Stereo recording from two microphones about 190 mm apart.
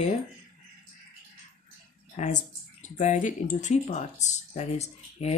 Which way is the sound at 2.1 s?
40° left (ahead or behind).